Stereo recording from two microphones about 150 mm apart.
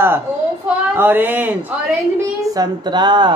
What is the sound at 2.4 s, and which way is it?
Speech, 25° right (ahead or behind).